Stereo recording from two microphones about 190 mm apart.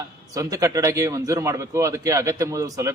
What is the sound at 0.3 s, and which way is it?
A man's voice, 15° right (ahead or behind).